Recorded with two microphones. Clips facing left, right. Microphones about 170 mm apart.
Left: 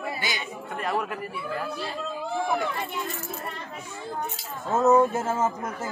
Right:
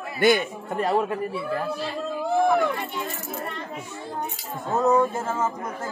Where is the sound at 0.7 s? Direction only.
35° right (ahead or behind).